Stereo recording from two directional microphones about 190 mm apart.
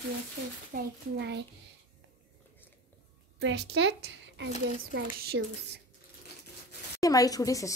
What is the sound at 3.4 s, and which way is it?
A woman's voice, 65° right (ahead or behind).